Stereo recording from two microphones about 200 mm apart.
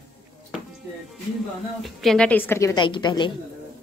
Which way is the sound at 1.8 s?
Centre (ahead or behind).